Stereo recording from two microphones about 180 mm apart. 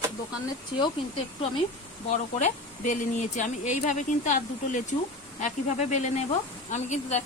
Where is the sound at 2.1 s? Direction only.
40° left (ahead or behind).